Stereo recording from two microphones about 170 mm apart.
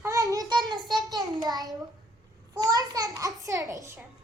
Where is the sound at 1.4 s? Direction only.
20° right (ahead or behind).